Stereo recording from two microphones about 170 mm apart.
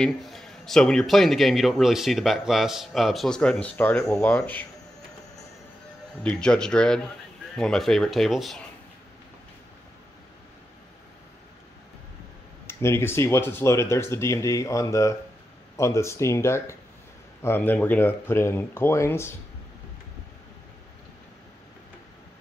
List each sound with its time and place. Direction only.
0.0 s a man's voice: centre (ahead or behind)
6.2 s a man's voice: 5° left (ahead or behind)
12.6 s speech: 15° left (ahead or behind)